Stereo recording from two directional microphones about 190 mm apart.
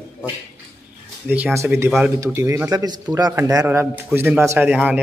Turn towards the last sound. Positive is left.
turn(degrees=-5)  # may be behind; listen again after turning